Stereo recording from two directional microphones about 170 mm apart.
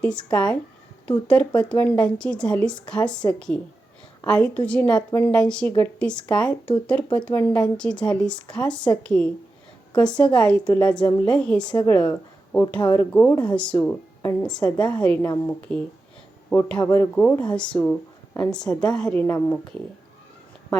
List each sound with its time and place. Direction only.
0.0 s a woman's voice: 5° left (ahead or behind)
11.7 s a woman's voice: 25° left (ahead or behind)
12.5 s a woman's voice: 10° left (ahead or behind)